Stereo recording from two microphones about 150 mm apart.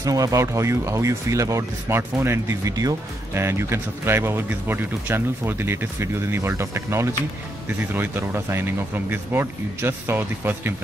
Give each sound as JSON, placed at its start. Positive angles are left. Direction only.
{"t": 0.0, "sound": "speech", "side_deg": -25}